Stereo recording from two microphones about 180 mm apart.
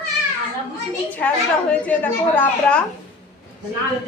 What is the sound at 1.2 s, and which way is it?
A woman's voice, 10° left (ahead or behind).